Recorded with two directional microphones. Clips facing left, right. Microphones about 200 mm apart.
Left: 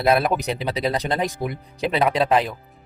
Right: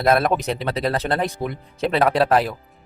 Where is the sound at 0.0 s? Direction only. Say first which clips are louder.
Right 1 dB; 5° left (ahead or behind).